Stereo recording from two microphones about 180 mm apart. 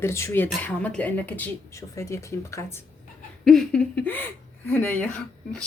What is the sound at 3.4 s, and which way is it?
Speech, centre (ahead or behind).